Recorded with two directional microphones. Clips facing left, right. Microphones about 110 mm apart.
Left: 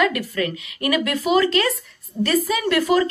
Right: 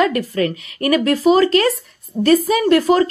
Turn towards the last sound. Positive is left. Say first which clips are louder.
# right 5 dB
turn(degrees=-35)  # may be behind; listen again after turning